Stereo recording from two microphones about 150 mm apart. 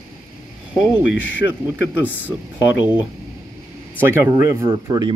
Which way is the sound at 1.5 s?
10° right (ahead or behind).